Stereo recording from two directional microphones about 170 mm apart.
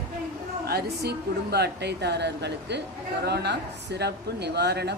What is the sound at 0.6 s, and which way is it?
Speech, 75° right (ahead or behind).